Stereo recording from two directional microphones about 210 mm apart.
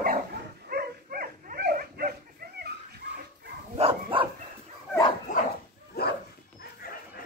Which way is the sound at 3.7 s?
25° right (ahead or behind).